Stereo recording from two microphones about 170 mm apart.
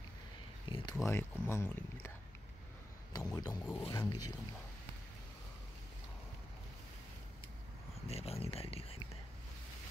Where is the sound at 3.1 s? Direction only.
20° left (ahead or behind).